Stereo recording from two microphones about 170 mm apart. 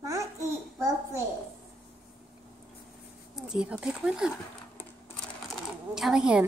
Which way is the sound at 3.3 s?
5° right (ahead or behind).